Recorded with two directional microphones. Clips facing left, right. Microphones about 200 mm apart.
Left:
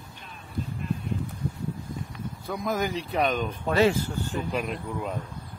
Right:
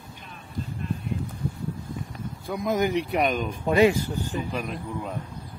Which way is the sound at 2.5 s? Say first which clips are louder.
Right 4 dB; 15° right (ahead or behind).